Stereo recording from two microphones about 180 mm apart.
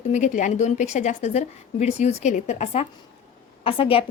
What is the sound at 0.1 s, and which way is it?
A woman's voice, 45° left (ahead or behind).